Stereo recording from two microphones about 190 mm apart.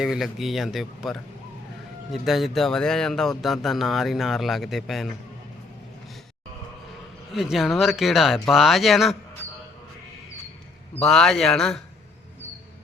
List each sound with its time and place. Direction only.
0.0 s speech: centre (ahead or behind)
7.3 s speech: centre (ahead or behind)
11.0 s speech: centre (ahead or behind)